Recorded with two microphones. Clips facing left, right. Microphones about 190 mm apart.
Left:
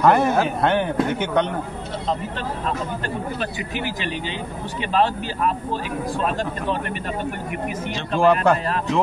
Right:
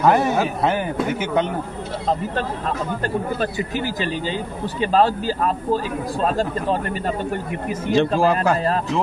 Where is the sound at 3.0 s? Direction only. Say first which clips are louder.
Right 4 dB; 40° right (ahead or behind).